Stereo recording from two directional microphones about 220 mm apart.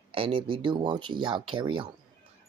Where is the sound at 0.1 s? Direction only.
25° right (ahead or behind).